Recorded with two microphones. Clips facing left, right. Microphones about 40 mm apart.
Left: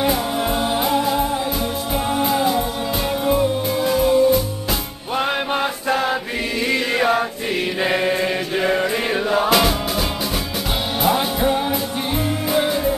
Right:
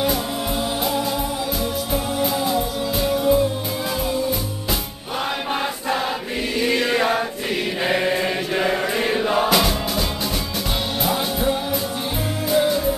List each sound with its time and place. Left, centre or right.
0.8 s music: centre
2.2 s music: centre
3.1 s music: left
3.9 s music: centre
5.5 s chant: centre
6.7 s music: centre
7.8 s chant: centre
9.2 s music: centre